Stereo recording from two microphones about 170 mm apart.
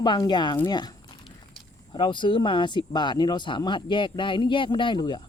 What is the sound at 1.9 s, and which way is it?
Speech, 30° left (ahead or behind).